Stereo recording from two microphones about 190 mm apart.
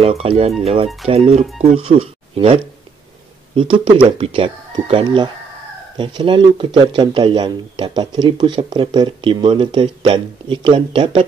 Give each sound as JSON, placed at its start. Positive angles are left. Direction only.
{"t": 0.0, "sound": "speech", "side_deg": -30}